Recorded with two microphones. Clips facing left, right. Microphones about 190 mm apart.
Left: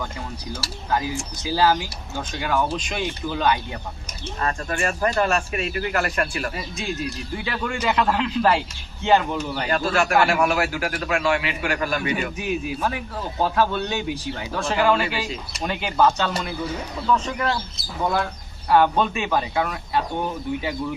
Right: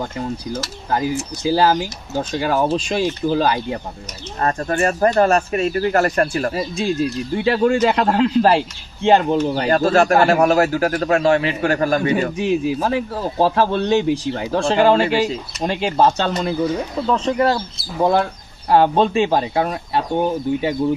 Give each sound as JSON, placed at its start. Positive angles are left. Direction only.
{"t": 2.1, "sound": "speech", "side_deg": -35}